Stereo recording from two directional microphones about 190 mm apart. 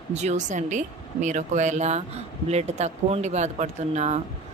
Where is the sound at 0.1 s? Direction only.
35° right (ahead or behind).